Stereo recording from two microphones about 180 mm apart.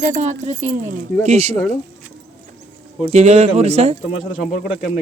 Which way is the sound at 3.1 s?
35° right (ahead or behind).